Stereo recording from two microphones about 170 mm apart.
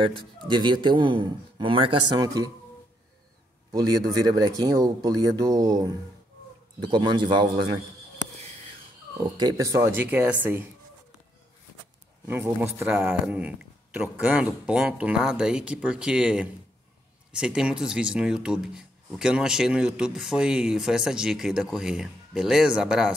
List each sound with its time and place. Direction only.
0.0 s a man's voice: 30° right (ahead or behind)
4.2 s a man's voice: 20° right (ahead or behind)
9.4 s a man's voice: 20° right (ahead or behind)
12.3 s speech: 15° right (ahead or behind)